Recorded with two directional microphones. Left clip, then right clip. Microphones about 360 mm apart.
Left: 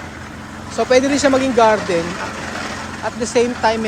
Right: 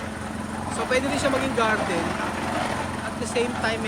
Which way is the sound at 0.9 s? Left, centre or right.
Centre.